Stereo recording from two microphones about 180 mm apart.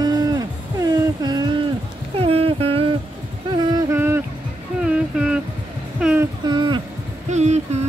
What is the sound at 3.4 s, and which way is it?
Music, 25° right (ahead or behind).